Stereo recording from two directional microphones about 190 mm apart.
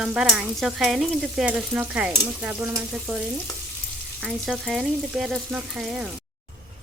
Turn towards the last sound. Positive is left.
turn(degrees=0)  # may be behind; listen again after turning